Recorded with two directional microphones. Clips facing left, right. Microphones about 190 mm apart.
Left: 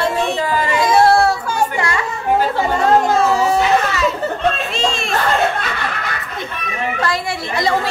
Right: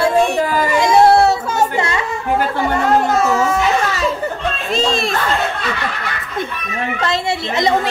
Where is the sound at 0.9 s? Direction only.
20° right (ahead or behind).